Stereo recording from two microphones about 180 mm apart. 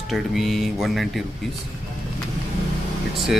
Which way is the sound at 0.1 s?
Centre (ahead or behind).